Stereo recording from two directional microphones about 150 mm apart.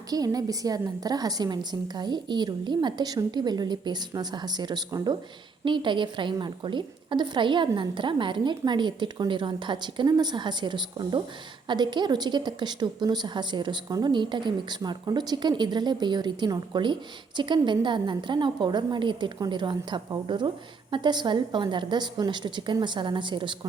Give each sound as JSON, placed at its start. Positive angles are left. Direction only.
{"t": 0.1, "sound": "a woman's voice", "side_deg": -25}